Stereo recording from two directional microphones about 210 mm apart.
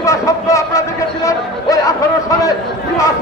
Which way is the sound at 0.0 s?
15° left (ahead or behind).